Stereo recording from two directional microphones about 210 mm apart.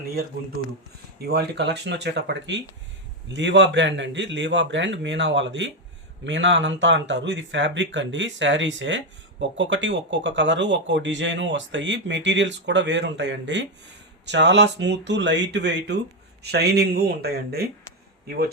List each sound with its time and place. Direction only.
1.2 s speech: 50° right (ahead or behind)